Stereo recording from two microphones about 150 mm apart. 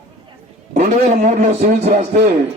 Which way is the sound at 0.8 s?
50° right (ahead or behind).